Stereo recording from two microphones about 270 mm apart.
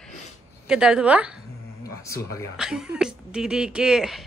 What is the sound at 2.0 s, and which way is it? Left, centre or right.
Speech, centre.